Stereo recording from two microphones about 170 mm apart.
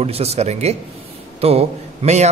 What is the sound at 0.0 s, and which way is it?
Speech, 35° right (ahead or behind).